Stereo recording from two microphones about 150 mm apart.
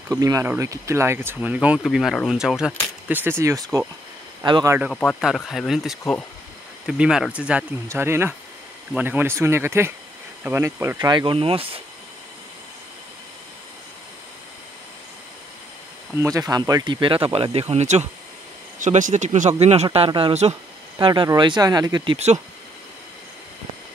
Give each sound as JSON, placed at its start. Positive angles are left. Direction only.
{"t": 0.1, "sound": "speech", "side_deg": -20}
{"t": 4.8, "sound": "speech", "side_deg": 0}
{"t": 16.2, "sound": "speech", "side_deg": -20}